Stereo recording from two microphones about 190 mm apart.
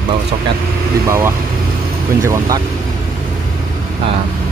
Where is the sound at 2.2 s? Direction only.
15° right (ahead or behind).